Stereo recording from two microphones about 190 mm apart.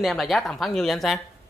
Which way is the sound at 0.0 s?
Centre (ahead or behind).